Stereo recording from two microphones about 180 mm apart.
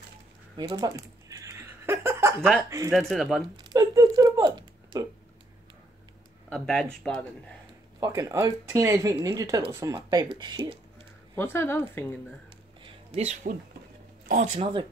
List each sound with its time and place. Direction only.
0.6 s a sound: 25° right (ahead or behind)
2.9 s speech: centre (ahead or behind)
3.5 s speech: 20° right (ahead or behind)
6.5 s speech: 5° left (ahead or behind)
8.0 s speech: 20° right (ahead or behind)
11.3 s speech: 10° left (ahead or behind)
12.8 s a sound: 35° right (ahead or behind)
14.2 s speech: 45° right (ahead or behind)